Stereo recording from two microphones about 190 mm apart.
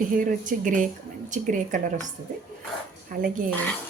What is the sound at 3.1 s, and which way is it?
Speech, 45° right (ahead or behind).